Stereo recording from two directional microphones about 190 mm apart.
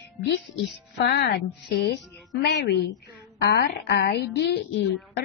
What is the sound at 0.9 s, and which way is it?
A woman's voice, 60° left (ahead or behind).